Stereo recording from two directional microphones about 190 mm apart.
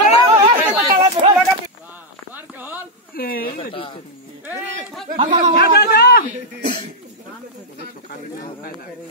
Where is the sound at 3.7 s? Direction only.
30° left (ahead or behind).